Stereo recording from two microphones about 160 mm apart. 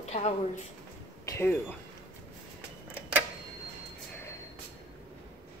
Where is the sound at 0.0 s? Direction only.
45° left (ahead or behind).